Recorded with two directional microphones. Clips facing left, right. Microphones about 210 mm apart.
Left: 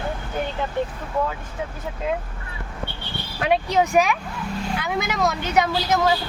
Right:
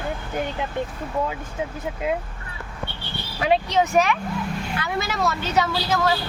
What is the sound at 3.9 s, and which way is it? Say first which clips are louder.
Speech: even; 10° left (ahead or behind).